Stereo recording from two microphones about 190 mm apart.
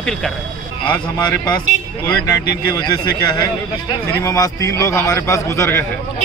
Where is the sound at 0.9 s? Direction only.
20° left (ahead or behind).